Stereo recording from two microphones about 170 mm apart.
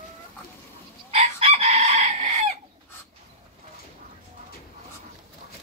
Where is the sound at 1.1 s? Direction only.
35° right (ahead or behind).